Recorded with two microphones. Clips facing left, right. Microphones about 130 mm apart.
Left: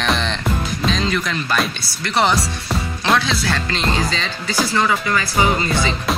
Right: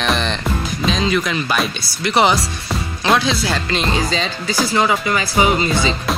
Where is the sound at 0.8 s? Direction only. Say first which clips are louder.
Right 3 dB; 5° right (ahead or behind).